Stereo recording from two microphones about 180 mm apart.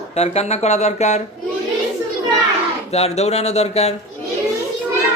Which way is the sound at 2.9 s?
35° left (ahead or behind).